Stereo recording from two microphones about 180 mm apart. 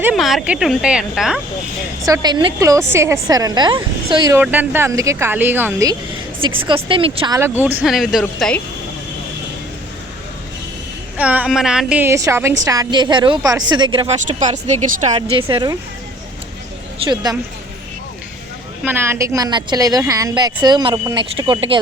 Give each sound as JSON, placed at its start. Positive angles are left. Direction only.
{"t": 0.0, "sound": "speech", "side_deg": 0}
{"t": 2.0, "sound": "a woman's voice", "side_deg": -20}
{"t": 4.4, "sound": "speech", "side_deg": -10}
{"t": 6.7, "sound": "a woman's voice", "side_deg": -30}
{"t": 7.6, "sound": "speech", "side_deg": -10}
{"t": 11.2, "sound": "a woman's voice", "side_deg": -5}
{"t": 14.3, "sound": "speech", "side_deg": -45}
{"t": 15.5, "sound": "a woman's voice", "side_deg": -25}
{"t": 17.0, "sound": "a woman's voice", "side_deg": -25}
{"t": 18.8, "sound": "a woman's voice", "side_deg": -10}